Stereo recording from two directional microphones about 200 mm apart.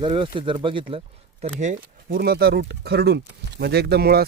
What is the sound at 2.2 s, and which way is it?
Speech, 50° right (ahead or behind).